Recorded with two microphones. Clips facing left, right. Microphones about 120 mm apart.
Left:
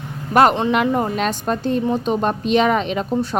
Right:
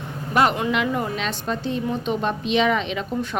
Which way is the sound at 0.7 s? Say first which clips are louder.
Left 5 dB; 45° left (ahead or behind).